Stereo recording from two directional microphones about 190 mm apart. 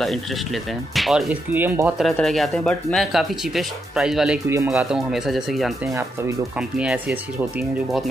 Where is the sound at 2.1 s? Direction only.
Centre (ahead or behind).